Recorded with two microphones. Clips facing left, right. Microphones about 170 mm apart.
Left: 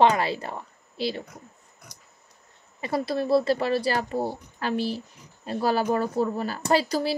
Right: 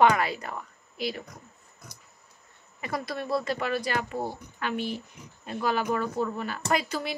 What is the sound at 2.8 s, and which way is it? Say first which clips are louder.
A woman's voice: left 6 dB; 30° left (ahead or behind).